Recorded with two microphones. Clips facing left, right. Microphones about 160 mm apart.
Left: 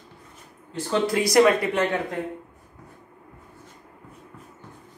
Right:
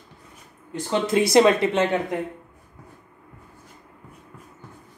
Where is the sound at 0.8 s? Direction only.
20° right (ahead or behind).